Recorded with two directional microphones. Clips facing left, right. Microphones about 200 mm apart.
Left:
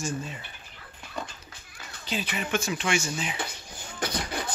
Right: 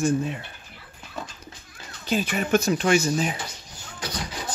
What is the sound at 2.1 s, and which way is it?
Speech, 45° right (ahead or behind).